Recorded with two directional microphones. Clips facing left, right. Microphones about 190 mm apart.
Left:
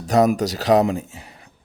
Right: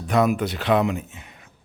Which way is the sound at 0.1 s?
40° left (ahead or behind).